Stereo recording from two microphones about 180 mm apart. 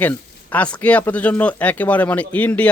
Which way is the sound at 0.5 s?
10° left (ahead or behind).